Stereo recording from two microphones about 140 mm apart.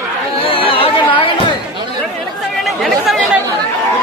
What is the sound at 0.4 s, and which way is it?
Chatter, 40° left (ahead or behind).